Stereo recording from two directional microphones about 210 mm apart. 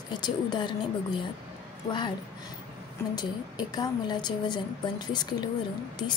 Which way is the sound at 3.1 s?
20° left (ahead or behind).